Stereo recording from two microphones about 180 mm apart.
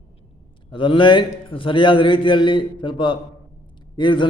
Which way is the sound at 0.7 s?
25° left (ahead or behind).